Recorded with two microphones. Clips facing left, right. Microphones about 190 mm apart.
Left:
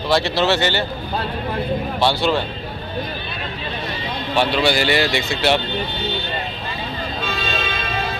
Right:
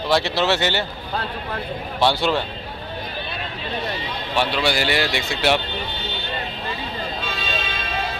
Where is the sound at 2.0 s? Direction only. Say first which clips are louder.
Right 1 dB; 20° right (ahead or behind).